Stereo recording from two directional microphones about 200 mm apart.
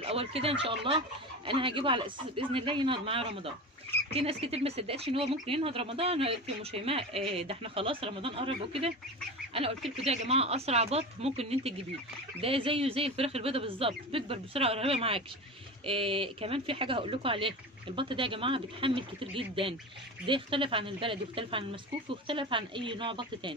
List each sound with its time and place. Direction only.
0.0 s speech: 30° right (ahead or behind)